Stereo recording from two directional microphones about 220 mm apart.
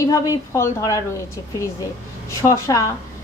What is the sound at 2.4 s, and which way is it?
Speech, 15° left (ahead or behind).